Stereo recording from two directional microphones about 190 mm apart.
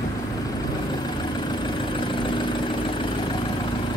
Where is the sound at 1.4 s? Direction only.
25° left (ahead or behind).